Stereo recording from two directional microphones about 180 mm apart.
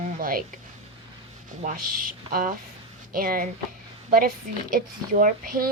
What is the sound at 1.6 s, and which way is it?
A woman's voice, 50° right (ahead or behind).